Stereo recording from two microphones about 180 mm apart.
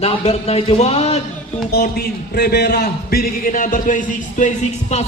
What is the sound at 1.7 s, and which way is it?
A man's voice, 60° left (ahead or behind).